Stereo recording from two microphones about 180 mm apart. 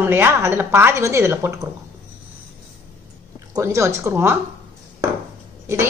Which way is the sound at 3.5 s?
15° right (ahead or behind).